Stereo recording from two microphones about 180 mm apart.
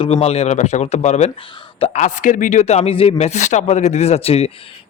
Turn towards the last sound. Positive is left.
turn(degrees=35)  # may be behind; listen again after turning